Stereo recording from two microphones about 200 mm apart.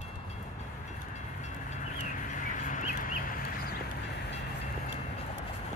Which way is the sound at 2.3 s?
40° left (ahead or behind).